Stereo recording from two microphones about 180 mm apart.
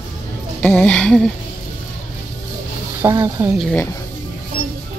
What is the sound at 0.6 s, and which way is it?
Music, 10° left (ahead or behind).